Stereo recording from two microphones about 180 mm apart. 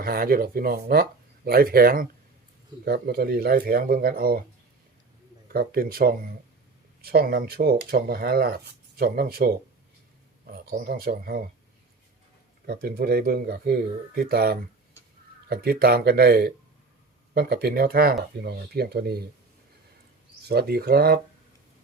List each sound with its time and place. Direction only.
0.0 s speech: 55° right (ahead or behind)
5.5 s speech: 55° right (ahead or behind)
12.6 s speech: 60° right (ahead or behind)
20.5 s speech: 60° right (ahead or behind)